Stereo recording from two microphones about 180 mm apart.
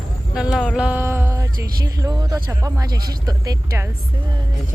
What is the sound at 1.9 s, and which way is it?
Speech, 20° right (ahead or behind).